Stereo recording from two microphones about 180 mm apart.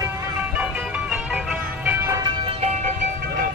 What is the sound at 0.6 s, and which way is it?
Music, 5° right (ahead or behind).